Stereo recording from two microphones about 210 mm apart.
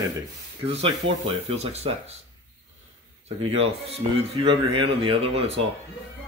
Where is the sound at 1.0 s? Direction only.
65° right (ahead or behind).